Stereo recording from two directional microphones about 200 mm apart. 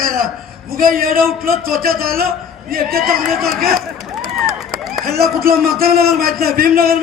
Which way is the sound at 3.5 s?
45° right (ahead or behind).